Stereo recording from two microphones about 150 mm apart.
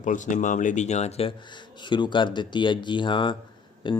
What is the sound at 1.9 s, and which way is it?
Speech, 30° left (ahead or behind).